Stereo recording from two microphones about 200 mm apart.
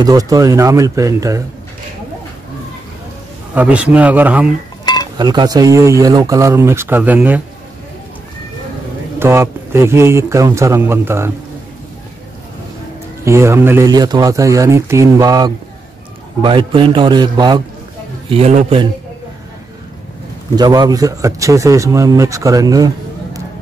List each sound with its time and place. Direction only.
0.0 s speech: 20° right (ahead or behind)
3.5 s speech: 5° right (ahead or behind)
5.1 s speech: 20° right (ahead or behind)
9.2 s speech: 10° right (ahead or behind)
13.2 s a man's voice: 15° right (ahead or behind)
18.3 s a man's voice: 35° right (ahead or behind)
20.5 s speech: 20° right (ahead or behind)